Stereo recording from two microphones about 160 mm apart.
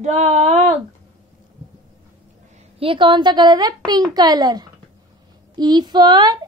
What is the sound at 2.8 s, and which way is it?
A woman's voice, 30° right (ahead or behind).